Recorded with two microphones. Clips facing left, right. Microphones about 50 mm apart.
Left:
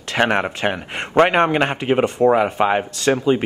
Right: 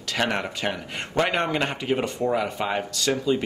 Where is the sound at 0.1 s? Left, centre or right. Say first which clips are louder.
Left 7 dB; left.